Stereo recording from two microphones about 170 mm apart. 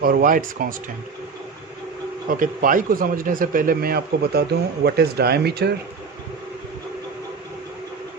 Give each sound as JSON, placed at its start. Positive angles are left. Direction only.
{"t": 0.0, "sound": "speech", "side_deg": -60}
{"t": 2.4, "sound": "speech", "side_deg": -55}